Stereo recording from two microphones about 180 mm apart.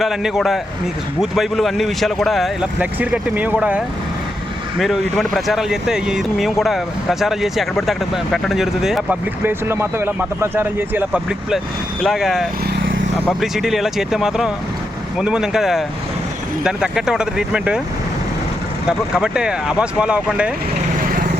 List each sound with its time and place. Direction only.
0.0 s speech: centre (ahead or behind)
12.7 s vehicle: 90° right
13.4 s speech: centre (ahead or behind)
18.9 s speech: 5° right (ahead or behind)